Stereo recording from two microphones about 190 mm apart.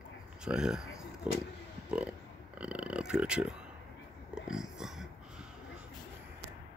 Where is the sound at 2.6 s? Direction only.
5° right (ahead or behind).